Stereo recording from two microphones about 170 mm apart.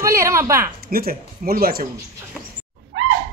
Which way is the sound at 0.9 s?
60° right (ahead or behind).